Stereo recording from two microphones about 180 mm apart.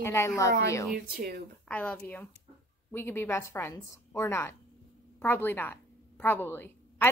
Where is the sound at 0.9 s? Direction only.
55° right (ahead or behind).